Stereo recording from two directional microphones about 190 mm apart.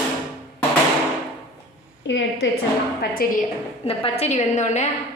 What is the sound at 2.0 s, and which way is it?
Speech, 75° left (ahead or behind).